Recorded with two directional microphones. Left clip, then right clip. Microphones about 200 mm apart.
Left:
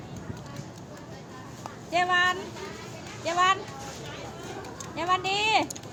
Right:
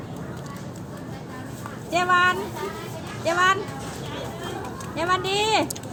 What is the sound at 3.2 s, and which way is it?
Speech, 25° left (ahead or behind).